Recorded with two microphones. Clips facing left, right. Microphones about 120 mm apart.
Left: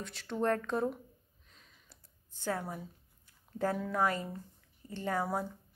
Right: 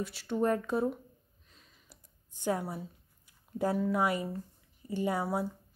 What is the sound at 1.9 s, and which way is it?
Computer keyboard, 15° right (ahead or behind).